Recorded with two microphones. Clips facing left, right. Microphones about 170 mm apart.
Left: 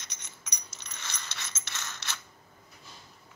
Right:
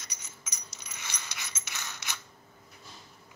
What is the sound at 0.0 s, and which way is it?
Coin, 5° right (ahead or behind).